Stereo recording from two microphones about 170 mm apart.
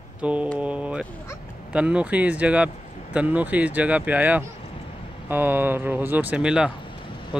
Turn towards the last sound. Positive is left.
turn(degrees=-5)  # may be behind; listen again after turning